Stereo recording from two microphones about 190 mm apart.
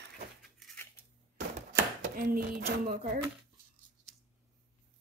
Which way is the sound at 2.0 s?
45° right (ahead or behind).